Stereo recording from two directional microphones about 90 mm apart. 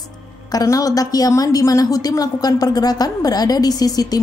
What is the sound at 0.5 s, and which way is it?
A woman's voice, 40° left (ahead or behind).